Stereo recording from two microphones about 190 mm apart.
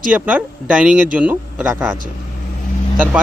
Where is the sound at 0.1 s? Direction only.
5° right (ahead or behind).